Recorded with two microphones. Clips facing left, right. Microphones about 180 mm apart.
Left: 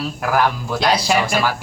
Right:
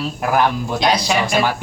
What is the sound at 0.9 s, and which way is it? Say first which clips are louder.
Speech: left 1 dB; 5° left (ahead or behind).